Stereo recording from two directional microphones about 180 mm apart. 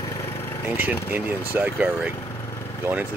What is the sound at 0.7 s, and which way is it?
Speech, 10° right (ahead or behind).